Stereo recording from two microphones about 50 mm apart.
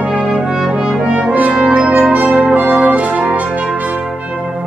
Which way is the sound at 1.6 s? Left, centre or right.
Right.